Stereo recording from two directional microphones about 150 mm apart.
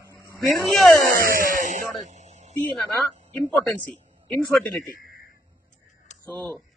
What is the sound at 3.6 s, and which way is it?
Speech, centre (ahead or behind).